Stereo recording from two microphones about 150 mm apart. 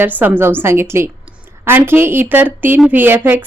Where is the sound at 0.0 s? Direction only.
10° right (ahead or behind).